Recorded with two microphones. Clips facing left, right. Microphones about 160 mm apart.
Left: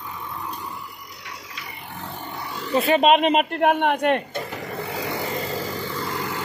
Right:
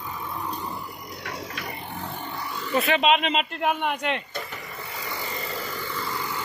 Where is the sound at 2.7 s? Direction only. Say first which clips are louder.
Left 4 dB; 40° left (ahead or behind).